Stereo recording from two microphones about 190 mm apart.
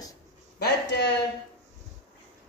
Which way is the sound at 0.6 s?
60° left (ahead or behind).